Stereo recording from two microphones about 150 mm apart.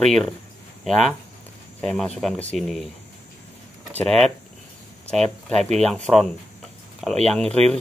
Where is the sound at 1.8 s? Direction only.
5° left (ahead or behind).